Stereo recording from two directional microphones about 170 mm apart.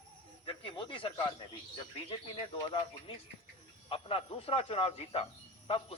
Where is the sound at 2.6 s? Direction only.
30° left (ahead or behind).